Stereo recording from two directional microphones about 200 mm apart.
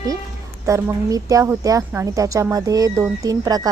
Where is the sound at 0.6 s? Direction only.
15° right (ahead or behind).